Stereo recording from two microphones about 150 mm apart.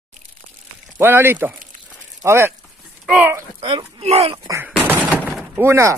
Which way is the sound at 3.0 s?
5° right (ahead or behind).